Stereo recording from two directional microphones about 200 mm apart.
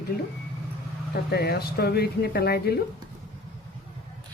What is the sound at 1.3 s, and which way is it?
Speech, 55° left (ahead or behind).